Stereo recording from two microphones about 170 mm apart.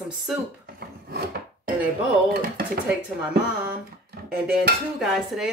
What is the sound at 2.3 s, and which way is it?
Speech, 55° right (ahead or behind).